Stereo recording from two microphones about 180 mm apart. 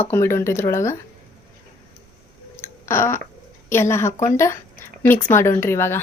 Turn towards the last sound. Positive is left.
turn(degrees=15)  # may be behind; listen again after turning